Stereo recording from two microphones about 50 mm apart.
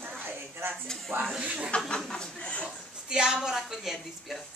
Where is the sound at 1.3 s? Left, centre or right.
Centre.